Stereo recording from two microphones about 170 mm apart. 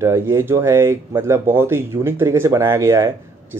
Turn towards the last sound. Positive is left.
turn(degrees=-15)  # may be behind; listen again after turning